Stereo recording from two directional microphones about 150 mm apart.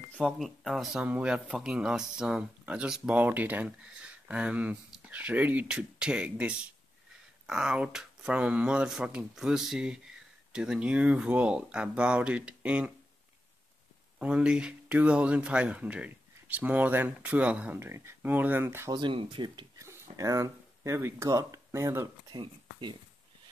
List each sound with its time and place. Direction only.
0.1 s speech: centre (ahead or behind)
14.1 s speech: 10° right (ahead or behind)
18.9 s speech: 30° right (ahead or behind)
19.8 s speech: 20° right (ahead or behind)
22.4 s speech: 30° right (ahead or behind)